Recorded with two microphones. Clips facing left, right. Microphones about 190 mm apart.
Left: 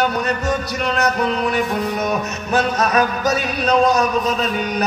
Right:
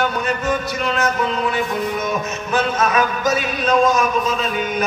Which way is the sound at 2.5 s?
40° left (ahead or behind).